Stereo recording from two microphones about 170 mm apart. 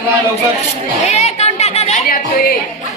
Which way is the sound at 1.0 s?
40° left (ahead or behind).